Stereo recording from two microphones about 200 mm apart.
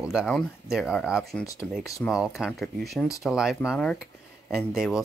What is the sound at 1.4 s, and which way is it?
Speech, 15° left (ahead or behind).